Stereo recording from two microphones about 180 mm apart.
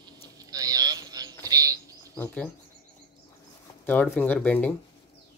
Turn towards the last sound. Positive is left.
turn(degrees=10)  # may be behind; listen again after turning